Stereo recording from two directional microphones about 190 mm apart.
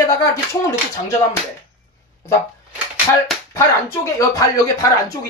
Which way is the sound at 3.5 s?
15° left (ahead or behind).